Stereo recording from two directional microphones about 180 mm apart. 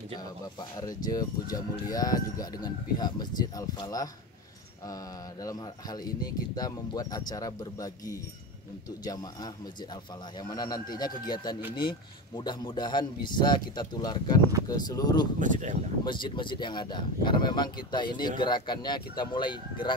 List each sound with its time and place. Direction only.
0.1 s speech: 20° left (ahead or behind)
5.4 s speech: 20° left (ahead or behind)
10.5 s speech: 20° left (ahead or behind)
15.3 s speech: 45° right (ahead or behind)
16.1 s speech: 25° left (ahead or behind)